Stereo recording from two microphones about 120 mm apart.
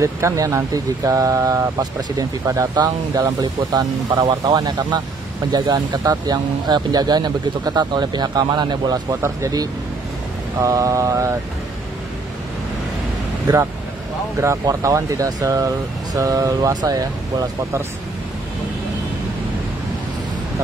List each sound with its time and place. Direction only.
0.0 s speech: 25° right (ahead or behind)
13.5 s speech: 35° right (ahead or behind)